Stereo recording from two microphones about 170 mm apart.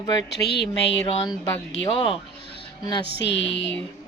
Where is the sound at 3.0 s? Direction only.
90° left.